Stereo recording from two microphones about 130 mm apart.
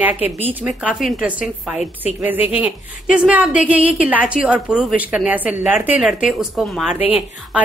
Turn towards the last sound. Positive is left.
turn(degrees=-10)  # may be behind; listen again after turning